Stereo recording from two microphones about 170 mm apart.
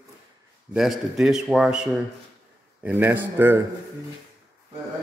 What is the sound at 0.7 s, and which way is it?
A man's voice, centre (ahead or behind).